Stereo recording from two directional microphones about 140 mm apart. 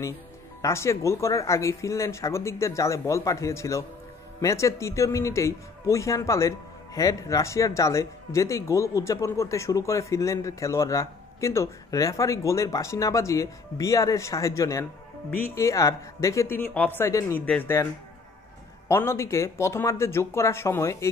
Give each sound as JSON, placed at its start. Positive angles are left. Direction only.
{"t": 0.6, "sound": "a man's voice", "side_deg": 20}
{"t": 18.9, "sound": "a man's voice", "side_deg": 20}